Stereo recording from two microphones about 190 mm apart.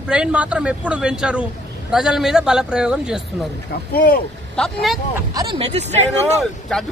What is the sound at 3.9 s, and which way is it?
Speech, 50° left (ahead or behind).